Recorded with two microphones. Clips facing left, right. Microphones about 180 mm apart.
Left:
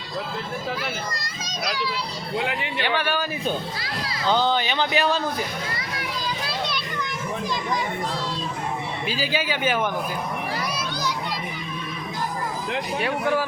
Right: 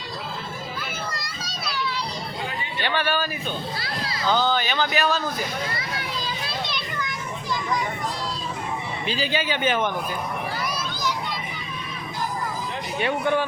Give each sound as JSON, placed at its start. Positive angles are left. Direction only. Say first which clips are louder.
{"t": 2.4, "sound": "a sound", "louder": "left 6 dB", "side_deg": 85}
{"t": 2.8, "sound": "speech", "louder": "right 1 dB", "side_deg": 10}
{"t": 4.3, "sound": "speech", "louder": "left 1 dB", "side_deg": 25}
{"t": 9.0, "sound": "speech", "louder": "right 1 dB", "side_deg": 5}
{"t": 13.0, "sound": "speech", "louder": "right 2 dB", "side_deg": 5}